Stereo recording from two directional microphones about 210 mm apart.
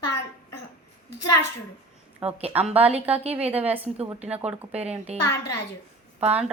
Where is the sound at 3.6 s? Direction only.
10° right (ahead or behind).